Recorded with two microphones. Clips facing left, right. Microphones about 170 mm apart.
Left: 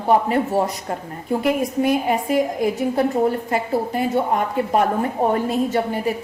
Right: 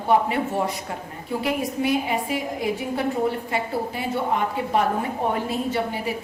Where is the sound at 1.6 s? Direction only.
45° left (ahead or behind).